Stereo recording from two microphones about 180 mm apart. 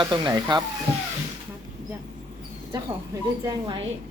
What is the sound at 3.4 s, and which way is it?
Speech, 25° right (ahead or behind).